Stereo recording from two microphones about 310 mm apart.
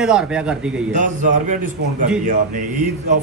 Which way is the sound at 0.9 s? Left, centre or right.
Right.